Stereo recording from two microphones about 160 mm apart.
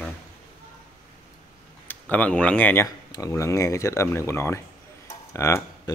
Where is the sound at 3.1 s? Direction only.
20° left (ahead or behind).